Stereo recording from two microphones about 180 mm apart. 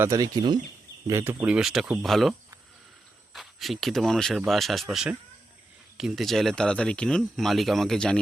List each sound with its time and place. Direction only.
0.0 s speech: 20° right (ahead or behind); by 2.3 s centre (ahead or behind)
3.3 s speech: centre (ahead or behind)